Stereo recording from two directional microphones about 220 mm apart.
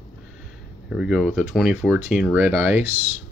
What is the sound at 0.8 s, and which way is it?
Speech, centre (ahead or behind).